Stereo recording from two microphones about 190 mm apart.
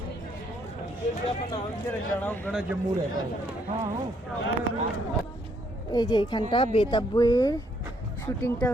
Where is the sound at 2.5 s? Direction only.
5° right (ahead or behind).